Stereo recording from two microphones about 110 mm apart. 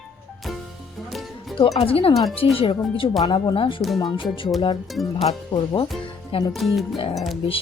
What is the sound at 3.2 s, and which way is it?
Speech, 40° left (ahead or behind).